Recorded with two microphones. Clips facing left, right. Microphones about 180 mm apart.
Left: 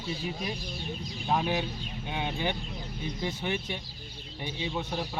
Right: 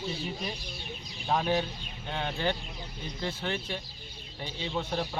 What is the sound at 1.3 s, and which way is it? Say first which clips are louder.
A man's voice: right 1 dB; 10° left (ahead or behind).